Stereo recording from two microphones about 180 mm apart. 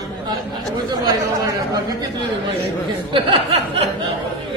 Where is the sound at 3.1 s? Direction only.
30° right (ahead or behind).